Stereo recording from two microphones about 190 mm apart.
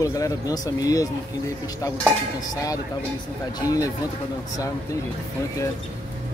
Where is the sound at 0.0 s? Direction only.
20° left (ahead or behind).